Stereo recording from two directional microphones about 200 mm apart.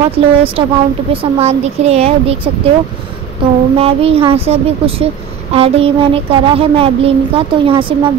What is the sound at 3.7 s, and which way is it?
Child singing, 30° right (ahead or behind).